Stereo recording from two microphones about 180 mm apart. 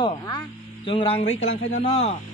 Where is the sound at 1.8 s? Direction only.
35° left (ahead or behind).